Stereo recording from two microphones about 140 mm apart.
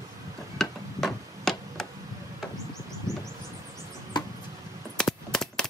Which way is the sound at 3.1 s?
20° right (ahead or behind).